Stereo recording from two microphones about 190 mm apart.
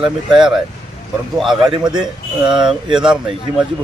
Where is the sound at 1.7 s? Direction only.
20° right (ahead or behind).